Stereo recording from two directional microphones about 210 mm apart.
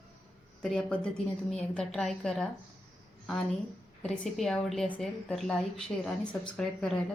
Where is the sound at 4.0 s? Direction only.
5° left (ahead or behind).